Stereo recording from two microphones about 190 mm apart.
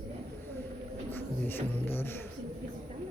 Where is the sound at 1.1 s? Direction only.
10° left (ahead or behind).